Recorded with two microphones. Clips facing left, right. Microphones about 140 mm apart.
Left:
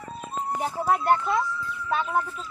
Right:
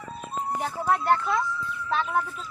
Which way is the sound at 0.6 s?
10° left (ahead or behind).